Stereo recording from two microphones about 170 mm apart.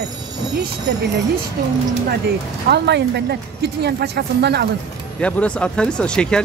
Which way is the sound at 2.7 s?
80° right.